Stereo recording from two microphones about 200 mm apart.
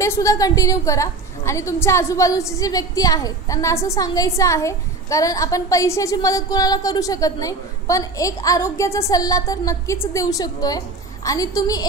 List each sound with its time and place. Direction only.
0.0 s a woman's voice: 15° left (ahead or behind)